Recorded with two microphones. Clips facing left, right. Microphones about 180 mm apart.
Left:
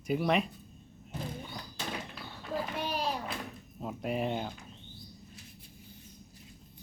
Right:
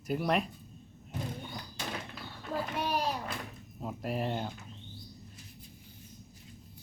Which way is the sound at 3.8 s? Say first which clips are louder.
Left 1 dB; centre (ahead or behind).